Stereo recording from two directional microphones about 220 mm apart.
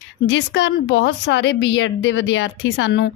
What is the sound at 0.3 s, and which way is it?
A woman's voice, 50° left (ahead or behind).